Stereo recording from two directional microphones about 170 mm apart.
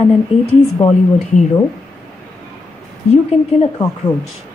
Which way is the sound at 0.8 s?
40° left (ahead or behind).